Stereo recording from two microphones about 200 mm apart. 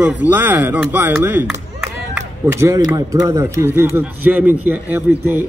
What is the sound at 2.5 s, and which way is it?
A man's voice, 15° right (ahead or behind).